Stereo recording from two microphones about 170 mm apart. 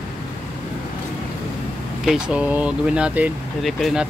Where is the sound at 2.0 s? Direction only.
5° right (ahead or behind).